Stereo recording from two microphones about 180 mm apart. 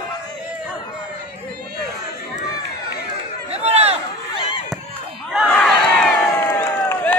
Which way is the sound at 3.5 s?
35° right (ahead or behind).